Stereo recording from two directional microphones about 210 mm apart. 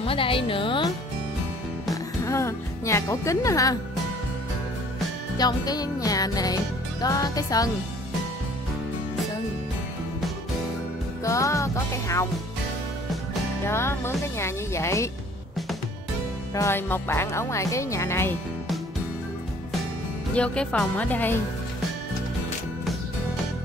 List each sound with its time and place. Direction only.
0.0 s speech: 25° left (ahead or behind)
2.2 s speech: 15° left (ahead or behind)
5.4 s music: 20° left (ahead or behind)
11.2 s music: 15° left (ahead or behind)
13.7 s music: 10° left (ahead or behind)
16.5 s music: 10° left (ahead or behind)
20.3 s music: 5° left (ahead or behind)